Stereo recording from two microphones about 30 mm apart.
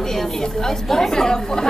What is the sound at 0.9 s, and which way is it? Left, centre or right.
Speech, centre.